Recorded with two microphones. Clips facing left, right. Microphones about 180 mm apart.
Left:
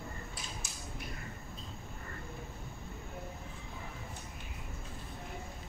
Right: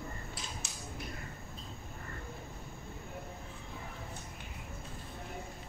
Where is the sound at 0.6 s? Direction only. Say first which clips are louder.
Right 1 dB; 70° right (ahead or behind).